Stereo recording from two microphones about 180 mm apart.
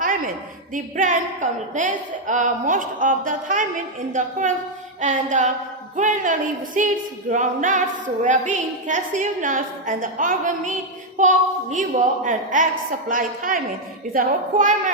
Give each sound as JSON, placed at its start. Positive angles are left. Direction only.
{"t": 0.7, "sound": "a woman's voice", "side_deg": -45}